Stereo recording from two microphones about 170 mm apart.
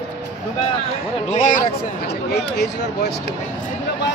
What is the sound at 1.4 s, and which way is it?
Speech, 45° left (ahead or behind).